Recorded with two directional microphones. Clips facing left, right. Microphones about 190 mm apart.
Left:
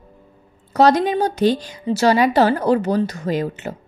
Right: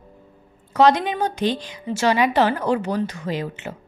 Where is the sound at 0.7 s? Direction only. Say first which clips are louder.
Left 2 dB; 40° left (ahead or behind).